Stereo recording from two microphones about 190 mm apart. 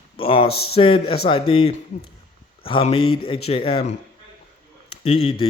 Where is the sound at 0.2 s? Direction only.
30° left (ahead or behind).